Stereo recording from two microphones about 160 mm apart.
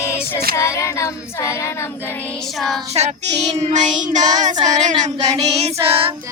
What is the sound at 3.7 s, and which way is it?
Child singing, 50° right (ahead or behind).